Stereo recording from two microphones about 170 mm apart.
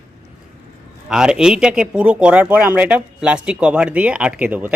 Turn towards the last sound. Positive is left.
turn(degrees=-10)  # may be behind; listen again after turning